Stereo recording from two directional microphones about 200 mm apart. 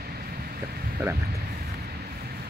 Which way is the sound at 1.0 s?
10° right (ahead or behind).